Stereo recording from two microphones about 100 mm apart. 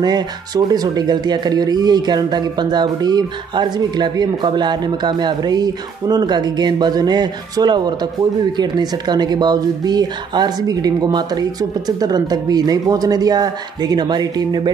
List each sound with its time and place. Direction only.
0.0 s speech: 45° right (ahead or behind)